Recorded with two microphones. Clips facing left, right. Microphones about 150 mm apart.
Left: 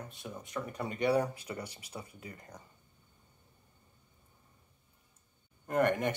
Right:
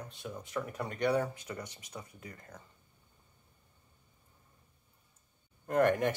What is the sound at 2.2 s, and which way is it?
Speech, 25° left (ahead or behind).